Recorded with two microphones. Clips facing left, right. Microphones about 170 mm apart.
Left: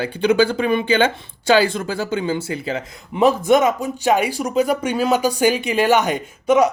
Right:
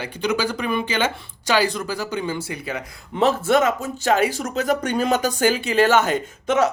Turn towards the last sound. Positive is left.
turn(degrees=10)  # may be behind; listen again after turning